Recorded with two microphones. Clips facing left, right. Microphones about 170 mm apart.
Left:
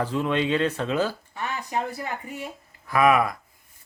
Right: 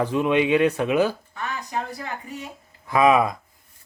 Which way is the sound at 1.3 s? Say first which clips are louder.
Even; 15° left (ahead or behind).